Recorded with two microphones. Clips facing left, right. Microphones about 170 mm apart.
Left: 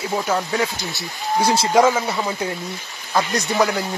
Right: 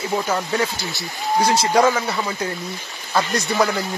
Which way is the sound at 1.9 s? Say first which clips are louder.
Left 1 dB; 15° left (ahead or behind).